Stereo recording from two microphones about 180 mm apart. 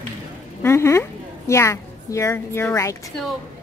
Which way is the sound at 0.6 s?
15° left (ahead or behind).